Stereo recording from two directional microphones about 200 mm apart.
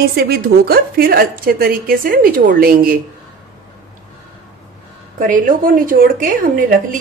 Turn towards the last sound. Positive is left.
turn(degrees=-45)  # may be behind; listen again after turning